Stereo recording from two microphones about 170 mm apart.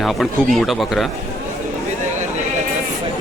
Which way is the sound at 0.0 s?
Centre (ahead or behind).